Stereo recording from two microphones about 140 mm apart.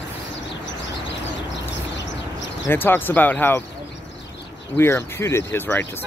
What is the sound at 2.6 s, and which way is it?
Speech, 15° left (ahead or behind).